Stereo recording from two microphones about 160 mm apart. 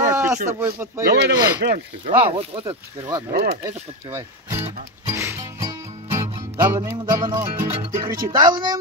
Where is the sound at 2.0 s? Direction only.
45° right (ahead or behind).